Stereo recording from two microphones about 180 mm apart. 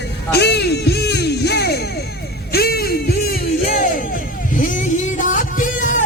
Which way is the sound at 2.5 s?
60° left (ahead or behind).